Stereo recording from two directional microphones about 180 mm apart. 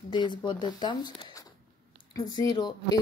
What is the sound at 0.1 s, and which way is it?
Speech, 25° left (ahead or behind).